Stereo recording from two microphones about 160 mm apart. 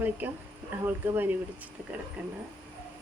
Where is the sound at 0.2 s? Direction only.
10° right (ahead or behind).